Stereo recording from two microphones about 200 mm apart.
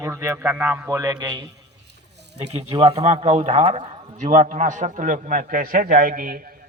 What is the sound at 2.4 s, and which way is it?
Speech, 35° right (ahead or behind).